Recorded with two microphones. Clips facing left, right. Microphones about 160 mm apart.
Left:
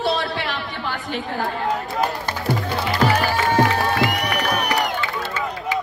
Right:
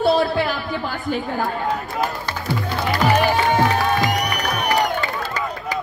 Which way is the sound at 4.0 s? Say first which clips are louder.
Even; 40° right (ahead or behind).